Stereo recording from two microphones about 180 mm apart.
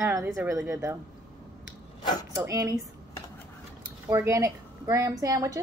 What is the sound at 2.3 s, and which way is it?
Speech, 15° right (ahead or behind).